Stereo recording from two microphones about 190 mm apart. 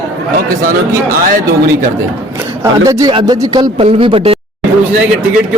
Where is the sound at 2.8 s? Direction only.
20° right (ahead or behind).